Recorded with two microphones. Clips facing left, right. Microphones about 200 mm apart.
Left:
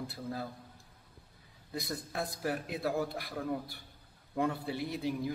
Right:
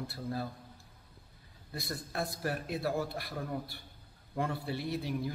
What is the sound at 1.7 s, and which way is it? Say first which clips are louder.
A man's voice: left 1 dB; 15° left (ahead or behind).